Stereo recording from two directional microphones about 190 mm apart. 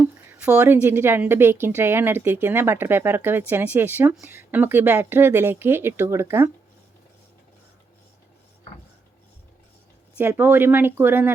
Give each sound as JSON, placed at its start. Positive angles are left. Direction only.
{"t": 0.0, "sound": "a woman's voice", "side_deg": -10}
{"t": 10.2, "sound": "a woman's voice", "side_deg": -10}